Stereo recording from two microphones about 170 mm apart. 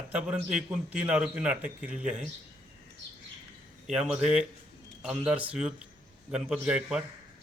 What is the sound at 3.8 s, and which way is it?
A man's voice, 5° right (ahead or behind).